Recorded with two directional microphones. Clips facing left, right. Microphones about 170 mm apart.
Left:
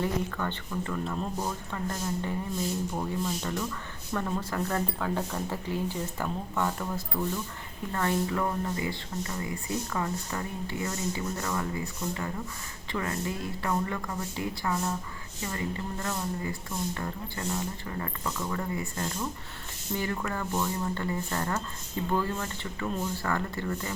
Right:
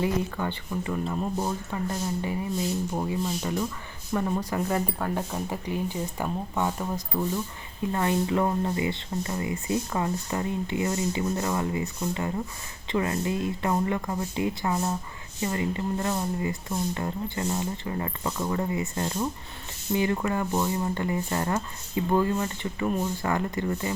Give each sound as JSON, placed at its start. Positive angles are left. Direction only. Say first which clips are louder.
{"t": 0.0, "sound": "speech", "louder": "right 3 dB", "side_deg": -15}